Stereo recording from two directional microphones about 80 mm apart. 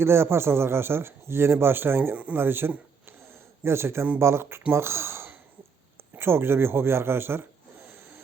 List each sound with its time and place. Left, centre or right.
0.0 s a man's voice: right